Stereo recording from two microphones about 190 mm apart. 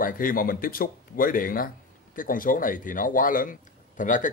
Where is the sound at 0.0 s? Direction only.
45° left (ahead or behind).